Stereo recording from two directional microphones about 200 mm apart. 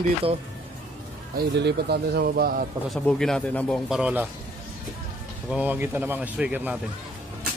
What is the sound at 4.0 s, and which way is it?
Speech, 5° right (ahead or behind).